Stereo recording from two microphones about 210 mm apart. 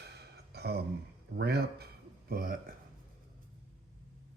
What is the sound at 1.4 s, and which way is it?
Speech, 50° right (ahead or behind).